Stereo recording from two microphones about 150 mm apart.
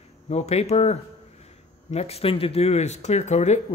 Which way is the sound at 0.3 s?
45° left (ahead or behind).